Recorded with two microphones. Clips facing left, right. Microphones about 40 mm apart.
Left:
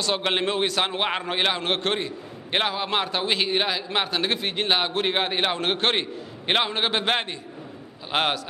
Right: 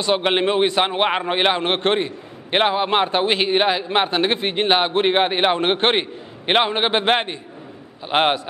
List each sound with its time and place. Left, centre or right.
0.0 s a man's voice: right